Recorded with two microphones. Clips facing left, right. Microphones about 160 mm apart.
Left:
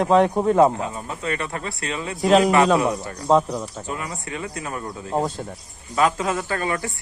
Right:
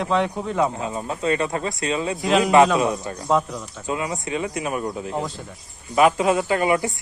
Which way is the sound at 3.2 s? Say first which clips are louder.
Left 4 dB; 35° left (ahead or behind).